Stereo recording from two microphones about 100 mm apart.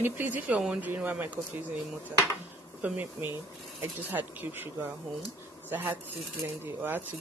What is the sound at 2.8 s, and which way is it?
Speech, 15° right (ahead or behind).